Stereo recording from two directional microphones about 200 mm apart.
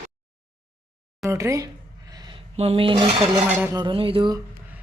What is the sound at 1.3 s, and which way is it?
Speech, 15° right (ahead or behind).